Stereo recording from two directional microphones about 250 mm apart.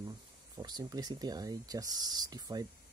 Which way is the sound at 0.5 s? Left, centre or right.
Centre.